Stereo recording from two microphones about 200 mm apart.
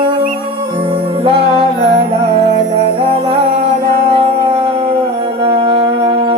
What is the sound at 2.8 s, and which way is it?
Music, 30° right (ahead or behind).